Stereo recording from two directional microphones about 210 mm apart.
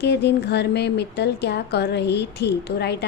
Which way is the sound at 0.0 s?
55° left (ahead or behind).